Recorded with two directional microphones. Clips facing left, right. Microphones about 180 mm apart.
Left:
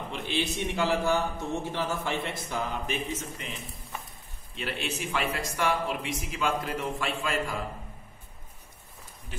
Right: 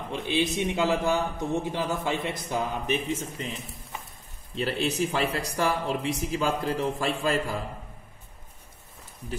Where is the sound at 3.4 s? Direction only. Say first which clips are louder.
Right 4 dB; 35° right (ahead or behind).